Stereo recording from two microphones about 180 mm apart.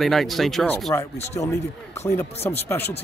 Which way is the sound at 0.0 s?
Centre (ahead or behind).